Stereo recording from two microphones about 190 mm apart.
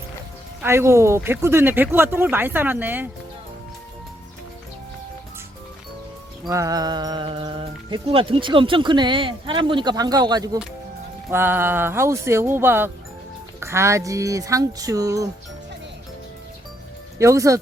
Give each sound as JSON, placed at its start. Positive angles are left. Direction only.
{"t": 0.6, "sound": "speech", "side_deg": -15}
{"t": 6.5, "sound": "speech", "side_deg": -15}
{"t": 17.2, "sound": "speech", "side_deg": -15}